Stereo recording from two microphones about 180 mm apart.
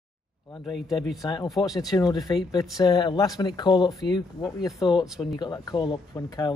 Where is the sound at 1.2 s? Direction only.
25° left (ahead or behind).